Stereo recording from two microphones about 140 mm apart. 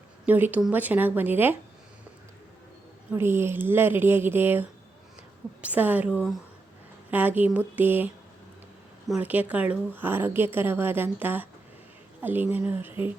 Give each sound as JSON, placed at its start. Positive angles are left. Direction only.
{"t": 0.3, "sound": "speech", "side_deg": -15}
{"t": 3.1, "sound": "speech", "side_deg": -15}
{"t": 5.6, "sound": "speech", "side_deg": -10}